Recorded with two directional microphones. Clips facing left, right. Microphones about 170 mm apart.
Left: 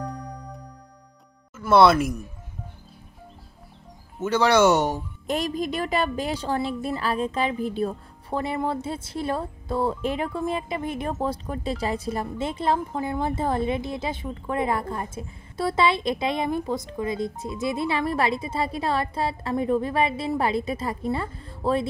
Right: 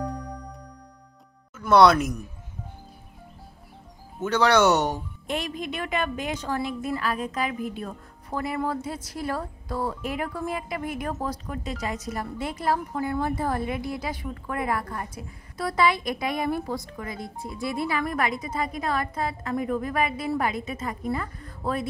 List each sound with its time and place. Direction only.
1.6 s speech: 5° left (ahead or behind)
4.2 s speech: 10° left (ahead or behind)
5.2 s a woman's voice: 40° left (ahead or behind)